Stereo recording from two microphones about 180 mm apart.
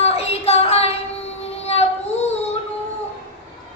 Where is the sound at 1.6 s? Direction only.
35° left (ahead or behind).